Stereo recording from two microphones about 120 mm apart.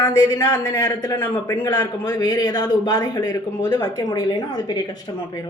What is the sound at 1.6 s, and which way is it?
A man's voice, 35° left (ahead or behind).